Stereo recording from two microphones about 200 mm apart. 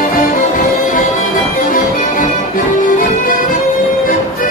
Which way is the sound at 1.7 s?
40° left (ahead or behind).